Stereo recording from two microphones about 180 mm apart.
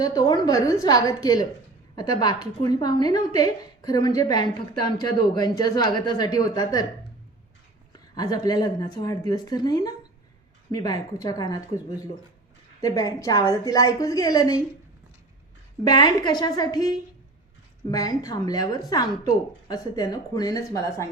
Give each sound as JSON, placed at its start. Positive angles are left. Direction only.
{"t": 0.0, "sound": "a woman's voice", "side_deg": 20}
{"t": 7.9, "sound": "a woman's voice", "side_deg": 20}
{"t": 12.8, "sound": "a woman's voice", "side_deg": 20}
{"t": 15.8, "sound": "a woman's voice", "side_deg": 20}